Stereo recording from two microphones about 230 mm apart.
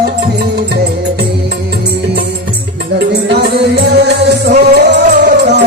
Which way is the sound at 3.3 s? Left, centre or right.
Right.